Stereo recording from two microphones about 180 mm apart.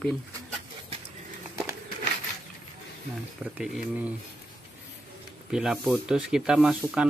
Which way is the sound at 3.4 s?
5° right (ahead or behind).